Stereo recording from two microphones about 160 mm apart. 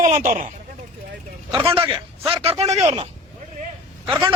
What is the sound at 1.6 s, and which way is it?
Speech, 35° right (ahead or behind).